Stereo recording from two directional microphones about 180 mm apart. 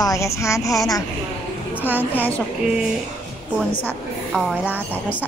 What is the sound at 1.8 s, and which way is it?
Speech, 10° right (ahead or behind).